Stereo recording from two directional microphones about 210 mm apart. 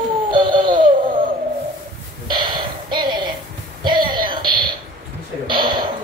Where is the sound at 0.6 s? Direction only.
20° right (ahead or behind).